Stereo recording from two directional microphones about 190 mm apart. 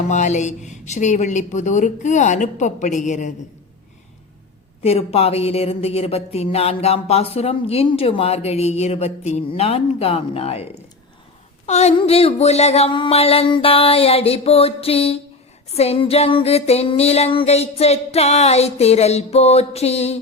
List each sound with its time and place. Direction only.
0.1 s speech: 40° left (ahead or behind)
4.8 s speech: 30° left (ahead or behind)